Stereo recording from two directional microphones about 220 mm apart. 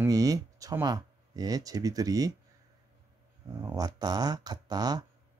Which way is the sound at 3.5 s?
15° right (ahead or behind).